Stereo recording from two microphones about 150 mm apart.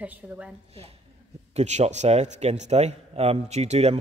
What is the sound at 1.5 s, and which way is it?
A man's voice, 50° right (ahead or behind).